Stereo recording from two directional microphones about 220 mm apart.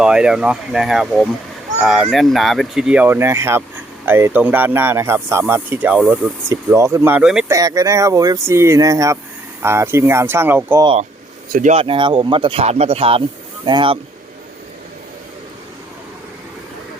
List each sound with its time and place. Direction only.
0.0 s speech: 5° right (ahead or behind)
7.5 s speech: 15° right (ahead or behind)
11.5 s speech: 30° right (ahead or behind)